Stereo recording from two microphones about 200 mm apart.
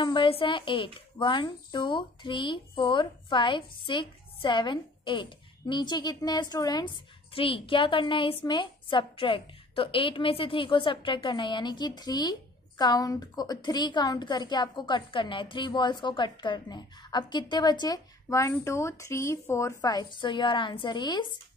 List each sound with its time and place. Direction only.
0.0 s a woman's voice: 25° left (ahead or behind)